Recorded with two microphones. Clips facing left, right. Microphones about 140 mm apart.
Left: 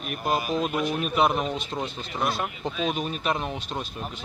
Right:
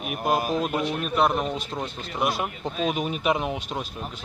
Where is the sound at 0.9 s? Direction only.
5° left (ahead or behind).